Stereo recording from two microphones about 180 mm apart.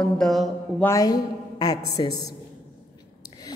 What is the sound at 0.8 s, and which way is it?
A woman's voice, 20° left (ahead or behind).